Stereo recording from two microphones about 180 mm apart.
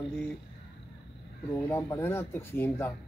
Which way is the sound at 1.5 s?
15° left (ahead or behind).